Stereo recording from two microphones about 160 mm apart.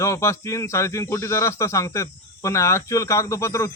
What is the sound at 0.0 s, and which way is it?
Speech, 20° left (ahead or behind).